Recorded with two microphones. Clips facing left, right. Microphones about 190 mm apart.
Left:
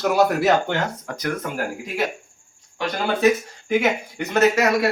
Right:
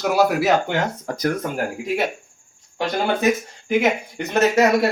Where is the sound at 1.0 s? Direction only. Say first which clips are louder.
Right 7 dB; 35° right (ahead or behind).